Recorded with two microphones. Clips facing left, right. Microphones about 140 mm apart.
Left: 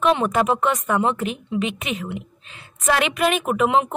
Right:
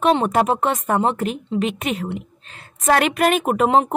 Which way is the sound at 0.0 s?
35° right (ahead or behind).